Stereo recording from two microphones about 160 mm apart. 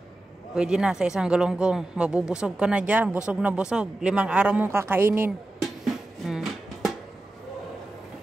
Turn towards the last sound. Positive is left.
turn(degrees=0)  # may be behind; listen again after turning